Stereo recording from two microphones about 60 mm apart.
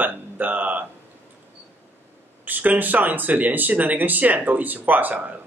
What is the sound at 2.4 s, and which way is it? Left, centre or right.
Speech, right.